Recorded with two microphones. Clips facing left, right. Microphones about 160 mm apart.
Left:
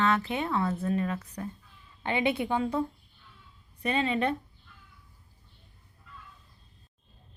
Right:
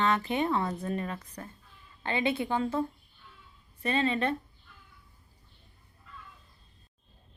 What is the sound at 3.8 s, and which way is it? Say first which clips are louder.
Speech: left 1 dB; 15° left (ahead or behind).